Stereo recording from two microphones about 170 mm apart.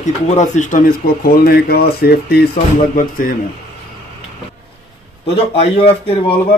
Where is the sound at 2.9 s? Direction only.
55° left (ahead or behind).